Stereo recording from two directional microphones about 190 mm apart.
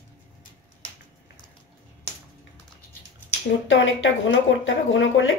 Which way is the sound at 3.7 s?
85° left.